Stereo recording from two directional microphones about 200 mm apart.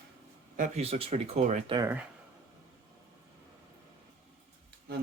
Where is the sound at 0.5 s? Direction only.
35° right (ahead or behind).